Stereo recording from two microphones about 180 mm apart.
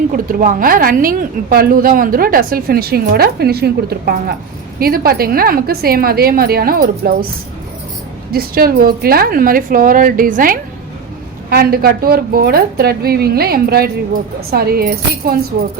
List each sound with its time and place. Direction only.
0.1 s a woman's voice: 50° right (ahead or behind)
8.3 s a woman's voice: 55° right (ahead or behind)